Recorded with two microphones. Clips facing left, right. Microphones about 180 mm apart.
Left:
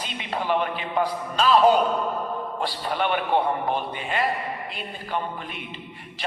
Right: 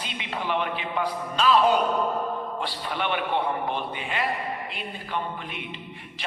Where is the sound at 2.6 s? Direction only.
45° left (ahead or behind).